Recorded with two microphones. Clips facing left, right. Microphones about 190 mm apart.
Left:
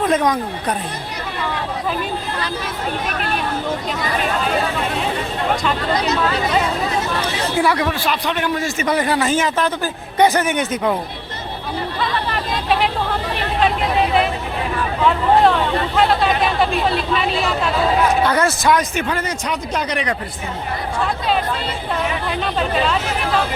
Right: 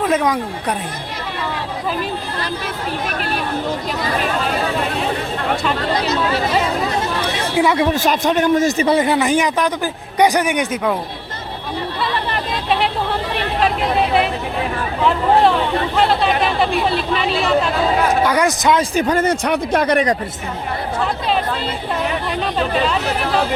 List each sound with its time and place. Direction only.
0.0 s a man's voice: 5° right (ahead or behind)
7.5 s speech: 20° right (ahead or behind)
7.9 s a man's voice: 45° right (ahead or behind)
8.9 s a man's voice: 20° right (ahead or behind)
18.2 s a man's voice: 10° right (ahead or behind)
18.9 s speech: 40° right (ahead or behind)
19.3 s a man's voice: 55° right (ahead or behind)